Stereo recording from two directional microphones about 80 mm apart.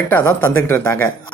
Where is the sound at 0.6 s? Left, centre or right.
Left.